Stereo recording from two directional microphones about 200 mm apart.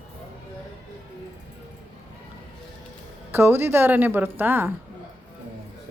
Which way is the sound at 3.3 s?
10° right (ahead or behind).